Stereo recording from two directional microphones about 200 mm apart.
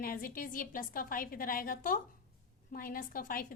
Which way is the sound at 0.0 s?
45° left (ahead or behind).